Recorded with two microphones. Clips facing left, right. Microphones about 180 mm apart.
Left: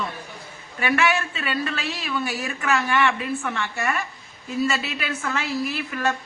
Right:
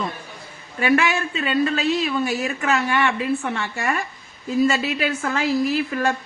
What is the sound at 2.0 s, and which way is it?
A woman's voice, 40° right (ahead or behind).